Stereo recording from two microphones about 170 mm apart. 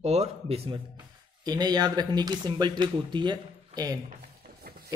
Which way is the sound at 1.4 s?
25° right (ahead or behind).